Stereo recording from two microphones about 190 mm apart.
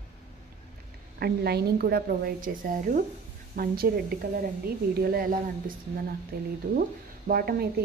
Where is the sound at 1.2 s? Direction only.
55° right (ahead or behind).